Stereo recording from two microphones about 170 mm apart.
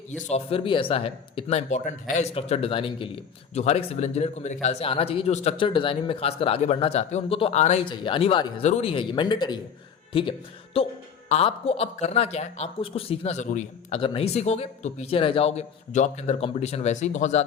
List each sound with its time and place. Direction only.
0.1 s a man's voice: 45° left (ahead or behind)
7.9 s a man's voice: 30° left (ahead or behind); by 14.0 s 45° left (ahead or behind)
14.0 s a man's voice: 35° left (ahead or behind)